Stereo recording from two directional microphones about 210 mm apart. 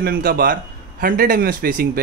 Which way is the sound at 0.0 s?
45° right (ahead or behind).